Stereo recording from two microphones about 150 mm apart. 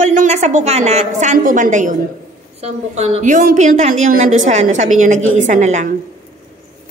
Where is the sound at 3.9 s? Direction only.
60° right (ahead or behind).